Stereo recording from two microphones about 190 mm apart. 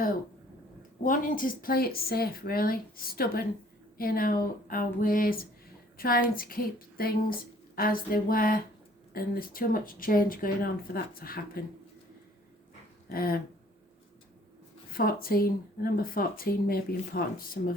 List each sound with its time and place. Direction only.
1.0 s speech: 45° left (ahead or behind)
13.1 s speech: 50° left (ahead or behind)
14.8 s speech: 50° left (ahead or behind)